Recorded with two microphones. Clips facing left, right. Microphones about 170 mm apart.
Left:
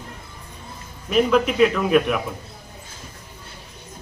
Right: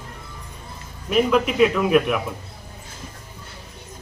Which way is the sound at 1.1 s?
Centre (ahead or behind).